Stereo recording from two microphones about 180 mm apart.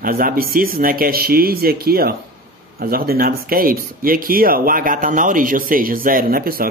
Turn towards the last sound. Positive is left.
turn(degrees=-55)  # may be behind; listen again after turning